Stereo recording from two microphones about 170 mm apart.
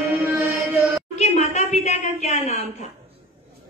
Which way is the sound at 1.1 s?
40° left (ahead or behind).